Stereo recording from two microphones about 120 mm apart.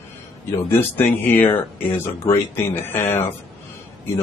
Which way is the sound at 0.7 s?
20° left (ahead or behind).